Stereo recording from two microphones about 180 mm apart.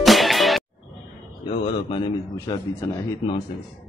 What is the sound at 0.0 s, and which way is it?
Music, centre (ahead or behind).